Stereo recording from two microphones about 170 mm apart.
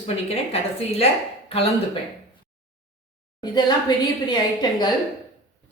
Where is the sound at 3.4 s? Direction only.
25° left (ahead or behind).